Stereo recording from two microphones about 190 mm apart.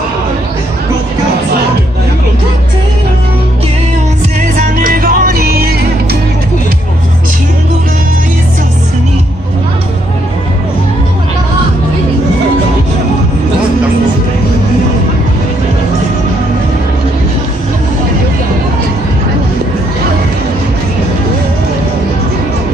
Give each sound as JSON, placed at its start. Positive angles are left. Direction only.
{"t": 4.7, "sound": "music", "side_deg": -50}